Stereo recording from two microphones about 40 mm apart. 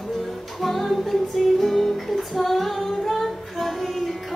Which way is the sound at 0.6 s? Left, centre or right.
Centre.